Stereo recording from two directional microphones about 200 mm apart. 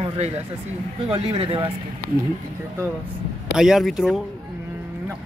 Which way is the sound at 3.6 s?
Centre (ahead or behind).